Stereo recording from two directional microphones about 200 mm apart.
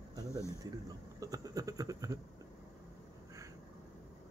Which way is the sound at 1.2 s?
15° right (ahead or behind).